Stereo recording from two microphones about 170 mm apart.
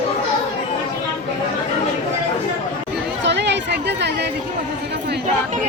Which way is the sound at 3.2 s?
90° right.